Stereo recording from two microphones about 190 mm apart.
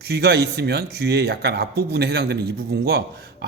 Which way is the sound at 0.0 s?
55° right (ahead or behind).